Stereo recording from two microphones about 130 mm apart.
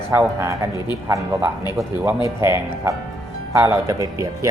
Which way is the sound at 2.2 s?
20° right (ahead or behind).